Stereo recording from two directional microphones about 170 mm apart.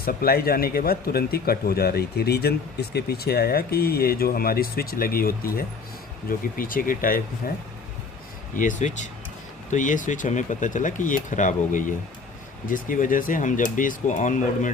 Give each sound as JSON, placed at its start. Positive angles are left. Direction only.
{"t": 0.0, "sound": "speech", "side_deg": 60}
{"t": 8.5, "sound": "speech", "side_deg": 50}